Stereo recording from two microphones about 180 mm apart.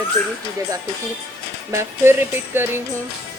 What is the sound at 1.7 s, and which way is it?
Music, 15° right (ahead or behind).